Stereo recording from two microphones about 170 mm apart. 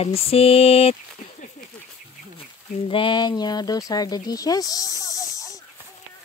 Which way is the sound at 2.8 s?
30° left (ahead or behind).